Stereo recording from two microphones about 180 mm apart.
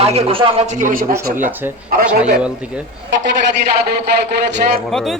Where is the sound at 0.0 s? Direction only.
35° right (ahead or behind).